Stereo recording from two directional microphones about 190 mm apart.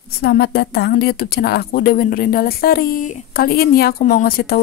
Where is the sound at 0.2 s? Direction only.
60° left (ahead or behind).